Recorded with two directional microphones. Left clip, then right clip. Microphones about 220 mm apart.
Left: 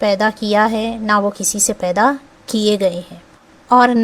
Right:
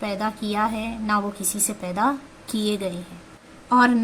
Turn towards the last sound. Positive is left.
turn(degrees=40)  # may be behind; listen again after turning